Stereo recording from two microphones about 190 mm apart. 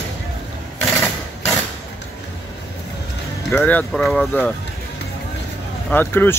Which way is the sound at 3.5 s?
10° left (ahead or behind).